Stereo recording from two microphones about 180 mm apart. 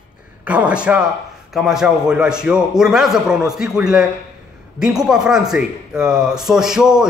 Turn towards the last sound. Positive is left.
turn(degrees=-5)  # may be behind; listen again after turning